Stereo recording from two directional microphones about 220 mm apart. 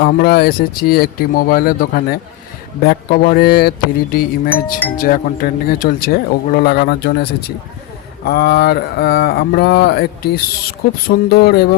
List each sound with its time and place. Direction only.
0.0 s speech: 45° left (ahead or behind)
4.4 s speech: 10° left (ahead or behind)
4.9 s speech: 40° left (ahead or behind)